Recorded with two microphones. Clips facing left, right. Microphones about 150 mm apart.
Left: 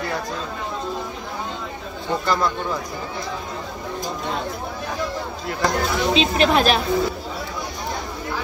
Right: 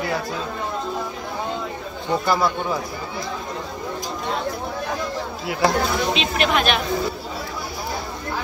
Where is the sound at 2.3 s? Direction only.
10° right (ahead or behind).